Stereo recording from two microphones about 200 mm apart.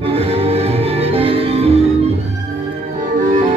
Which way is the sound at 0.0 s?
30° right (ahead or behind).